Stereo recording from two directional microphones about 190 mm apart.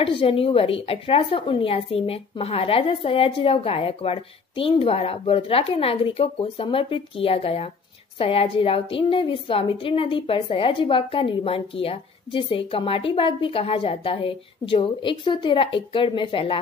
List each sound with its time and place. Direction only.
0.0 s a woman's voice: 30° left (ahead or behind)